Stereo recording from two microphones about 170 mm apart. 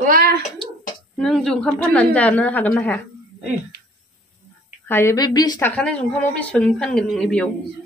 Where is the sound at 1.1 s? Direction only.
Centre (ahead or behind).